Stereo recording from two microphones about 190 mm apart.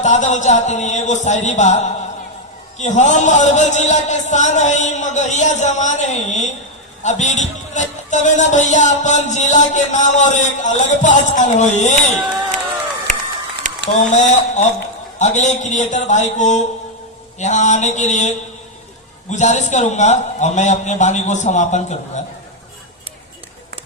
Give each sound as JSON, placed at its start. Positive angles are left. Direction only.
{"t": 0.0, "sound": "a man's voice", "side_deg": 40}
{"t": 13.1, "sound": "run", "side_deg": -40}
{"t": 13.7, "sound": "a sound", "side_deg": -40}
{"t": 14.1, "sound": "a man's voice", "side_deg": 40}